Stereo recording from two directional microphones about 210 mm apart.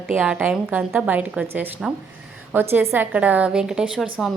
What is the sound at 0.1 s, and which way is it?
A woman's voice, 5° right (ahead or behind).